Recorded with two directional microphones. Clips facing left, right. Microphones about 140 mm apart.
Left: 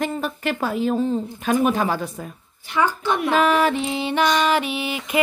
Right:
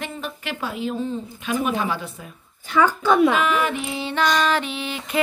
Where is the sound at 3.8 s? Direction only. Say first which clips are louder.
Left 2 dB; 20° left (ahead or behind).